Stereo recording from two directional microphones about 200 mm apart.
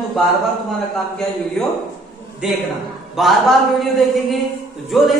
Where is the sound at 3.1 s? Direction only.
Centre (ahead or behind).